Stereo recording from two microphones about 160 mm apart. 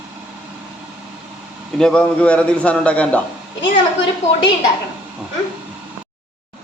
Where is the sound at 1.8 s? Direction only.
5° left (ahead or behind).